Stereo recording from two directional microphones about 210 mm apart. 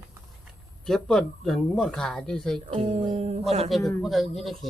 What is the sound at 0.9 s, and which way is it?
Speech, centre (ahead or behind).